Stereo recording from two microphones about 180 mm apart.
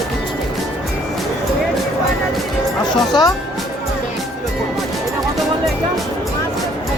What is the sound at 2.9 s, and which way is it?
Speech, 25° left (ahead or behind).